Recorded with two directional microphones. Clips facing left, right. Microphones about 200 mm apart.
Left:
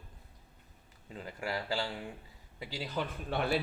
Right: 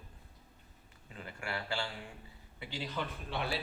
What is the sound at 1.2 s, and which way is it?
Speech, 35° left (ahead or behind).